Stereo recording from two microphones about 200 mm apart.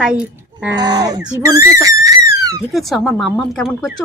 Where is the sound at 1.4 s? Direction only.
15° right (ahead or behind).